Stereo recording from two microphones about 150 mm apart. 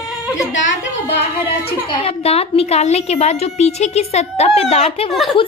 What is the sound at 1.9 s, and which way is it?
A woman's voice, 35° left (ahead or behind).